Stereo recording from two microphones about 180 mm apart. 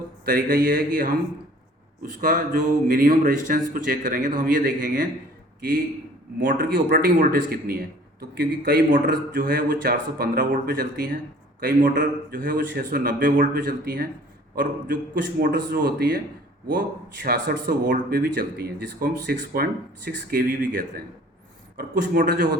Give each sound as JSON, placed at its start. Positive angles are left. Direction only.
{"t": 0.3, "sound": "speech", "side_deg": -50}
{"t": 6.4, "sound": "speech", "side_deg": -50}
{"t": 17.7, "sound": "speech", "side_deg": -50}